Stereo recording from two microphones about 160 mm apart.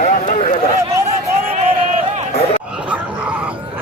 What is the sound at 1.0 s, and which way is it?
Crowd, 45° right (ahead or behind).